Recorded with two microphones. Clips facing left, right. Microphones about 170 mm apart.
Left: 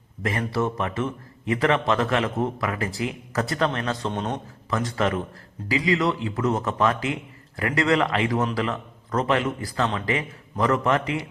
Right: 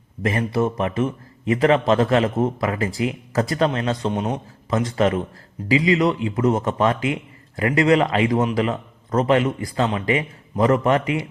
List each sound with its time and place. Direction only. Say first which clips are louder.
0.2 s a man's voice: right 4 dB; 20° right (ahead or behind)
4.1 s a man's voice: right 4 dB; 10° right (ahead or behind)
4.7 s a man's voice: right 5 dB; 20° right (ahead or behind)